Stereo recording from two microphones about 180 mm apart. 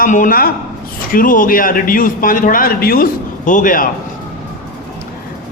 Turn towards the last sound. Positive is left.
turn(degrees=50)  # may be behind; listen again after turning